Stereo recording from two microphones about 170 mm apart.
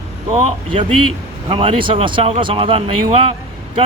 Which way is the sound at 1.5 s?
30° right (ahead or behind).